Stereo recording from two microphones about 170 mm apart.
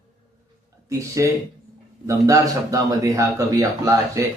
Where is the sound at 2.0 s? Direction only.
20° right (ahead or behind).